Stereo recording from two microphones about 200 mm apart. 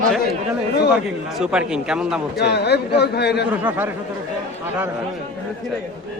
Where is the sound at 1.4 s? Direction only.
5° right (ahead or behind).